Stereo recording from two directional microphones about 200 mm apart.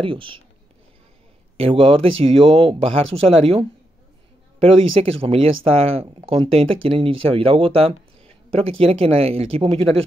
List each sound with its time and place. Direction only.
0.0 s speech: 25° right (ahead or behind)
1.6 s speech: 30° right (ahead or behind)
5.2 s speech: 30° right (ahead or behind)